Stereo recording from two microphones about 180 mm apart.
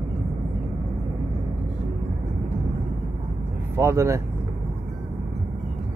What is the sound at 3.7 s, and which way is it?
Speech, 15° right (ahead or behind).